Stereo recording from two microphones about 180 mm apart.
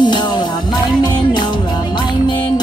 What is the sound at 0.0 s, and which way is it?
Music, 25° left (ahead or behind).